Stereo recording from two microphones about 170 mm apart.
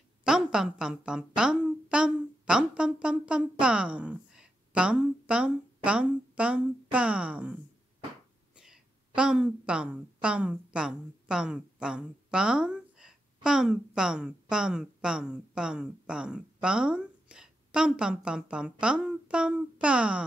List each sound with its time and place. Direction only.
0.2 s a woman's voice: 5° right (ahead or behind)
8.5 s a woman's voice: 5° right (ahead or behind)